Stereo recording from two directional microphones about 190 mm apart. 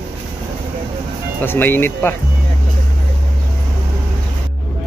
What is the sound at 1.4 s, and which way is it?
Speech, 10° left (ahead or behind).